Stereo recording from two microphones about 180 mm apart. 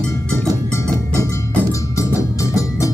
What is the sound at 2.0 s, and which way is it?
Music, 15° left (ahead or behind).